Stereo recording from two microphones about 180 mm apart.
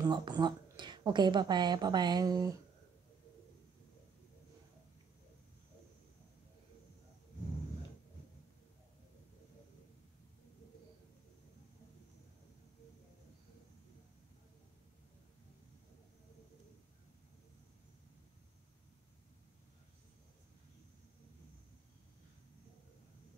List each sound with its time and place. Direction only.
0.0 s speech: 25° right (ahead or behind)